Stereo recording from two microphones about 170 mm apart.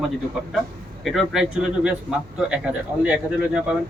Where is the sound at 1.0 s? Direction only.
Centre (ahead or behind).